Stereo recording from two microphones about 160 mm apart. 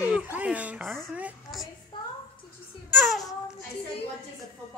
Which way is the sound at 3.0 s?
Centre (ahead or behind).